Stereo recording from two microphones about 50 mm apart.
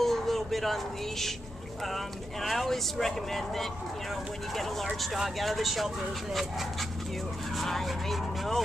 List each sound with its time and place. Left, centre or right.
0.0 s a sound: centre
2.4 s speech: centre
5.4 s speech: centre
7.5 s speech: centre